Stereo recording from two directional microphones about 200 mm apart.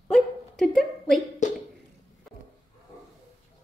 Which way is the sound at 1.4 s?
40° left (ahead or behind).